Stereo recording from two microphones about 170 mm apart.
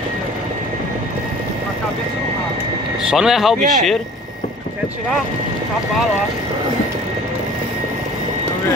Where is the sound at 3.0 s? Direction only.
5° right (ahead or behind).